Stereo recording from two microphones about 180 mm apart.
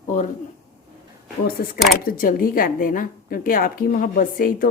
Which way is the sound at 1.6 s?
60° left (ahead or behind).